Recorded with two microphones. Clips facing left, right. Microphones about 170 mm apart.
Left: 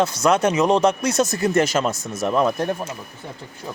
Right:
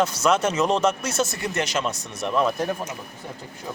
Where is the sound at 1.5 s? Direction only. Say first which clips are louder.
Left 7 dB; 50° left (ahead or behind).